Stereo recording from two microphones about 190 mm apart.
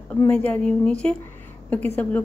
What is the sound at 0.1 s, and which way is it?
A woman's voice, 5° left (ahead or behind).